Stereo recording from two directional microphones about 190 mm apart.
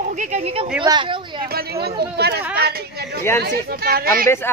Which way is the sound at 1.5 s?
55° right (ahead or behind).